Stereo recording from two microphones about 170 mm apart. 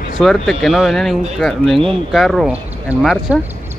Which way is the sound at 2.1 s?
Centre (ahead or behind).